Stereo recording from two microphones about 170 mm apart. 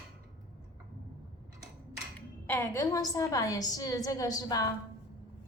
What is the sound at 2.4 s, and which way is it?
A woman's voice, 15° left (ahead or behind).